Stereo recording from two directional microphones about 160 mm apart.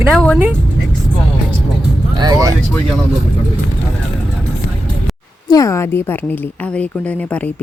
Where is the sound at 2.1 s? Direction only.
25° right (ahead or behind).